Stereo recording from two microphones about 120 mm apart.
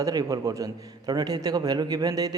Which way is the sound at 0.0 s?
30° right (ahead or behind).